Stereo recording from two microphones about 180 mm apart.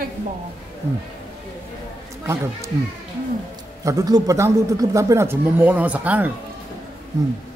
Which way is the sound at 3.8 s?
20° right (ahead or behind).